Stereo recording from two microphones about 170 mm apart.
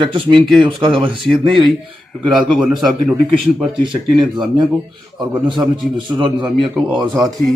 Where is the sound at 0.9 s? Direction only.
Centre (ahead or behind).